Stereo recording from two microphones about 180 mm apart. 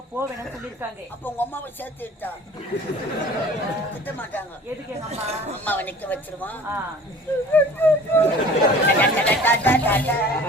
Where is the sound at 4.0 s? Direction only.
10° left (ahead or behind).